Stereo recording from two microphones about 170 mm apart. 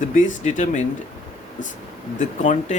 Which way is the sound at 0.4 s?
45° left (ahead or behind).